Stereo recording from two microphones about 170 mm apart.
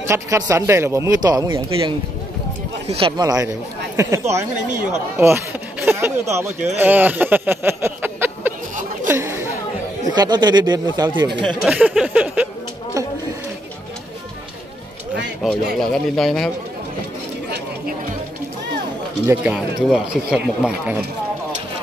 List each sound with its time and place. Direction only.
0.0 s speech: 15° right (ahead or behind)
9.0 s chatter: 15° right (ahead or behind)
10.1 s speech: 25° right (ahead or behind)
11.4 s speech: 5° right (ahead or behind)
13.0 s a sound: 20° right (ahead or behind)
15.4 s speech: centre (ahead or behind)
19.2 s speech: 5° right (ahead or behind)